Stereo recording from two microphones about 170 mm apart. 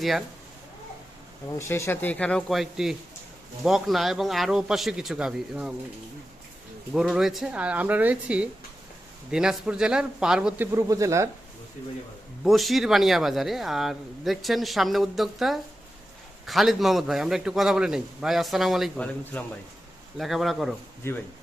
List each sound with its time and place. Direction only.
1.5 s a man's voice: 15° left (ahead or behind); by 5.7 s 5° right (ahead or behind)
6.9 s speech: 5° right (ahead or behind)
10.7 s speech: 20° right (ahead or behind)
12.5 s speech: centre (ahead or behind)
20.1 s speech: centre (ahead or behind)
21.0 s a man's voice: 15° left (ahead or behind)